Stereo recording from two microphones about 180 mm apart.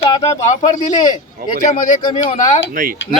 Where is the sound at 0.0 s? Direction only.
35° left (ahead or behind).